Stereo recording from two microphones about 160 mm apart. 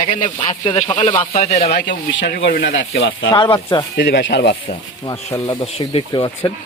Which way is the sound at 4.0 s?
90° left.